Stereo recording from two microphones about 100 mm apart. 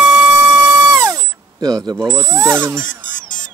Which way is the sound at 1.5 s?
40° right (ahead or behind).